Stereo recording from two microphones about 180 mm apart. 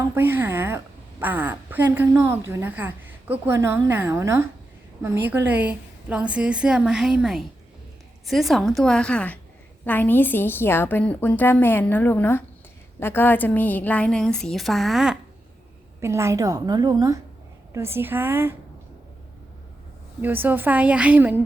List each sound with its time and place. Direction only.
0.0 s a woman's voice: 15° right (ahead or behind)
16.0 s a woman's voice: 15° right (ahead or behind)
20.2 s a woman's voice: 10° right (ahead or behind)